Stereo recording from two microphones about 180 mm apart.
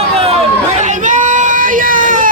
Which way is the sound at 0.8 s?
45° right (ahead or behind).